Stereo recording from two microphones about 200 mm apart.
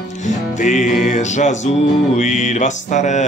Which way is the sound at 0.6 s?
35° left (ahead or behind).